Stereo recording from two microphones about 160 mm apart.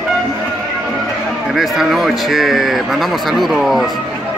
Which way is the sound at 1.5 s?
Centre (ahead or behind).